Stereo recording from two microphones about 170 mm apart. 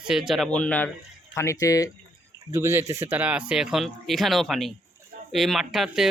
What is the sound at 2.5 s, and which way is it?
Speech, 15° right (ahead or behind).